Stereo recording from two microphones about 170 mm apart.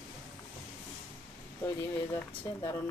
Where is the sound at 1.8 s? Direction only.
15° left (ahead or behind).